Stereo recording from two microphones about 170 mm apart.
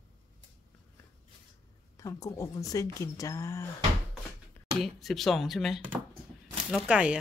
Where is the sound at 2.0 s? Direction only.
20° left (ahead or behind).